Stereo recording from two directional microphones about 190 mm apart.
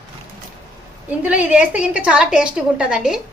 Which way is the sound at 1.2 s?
5° right (ahead or behind).